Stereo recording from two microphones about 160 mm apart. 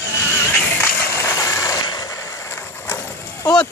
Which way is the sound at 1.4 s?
20° left (ahead or behind).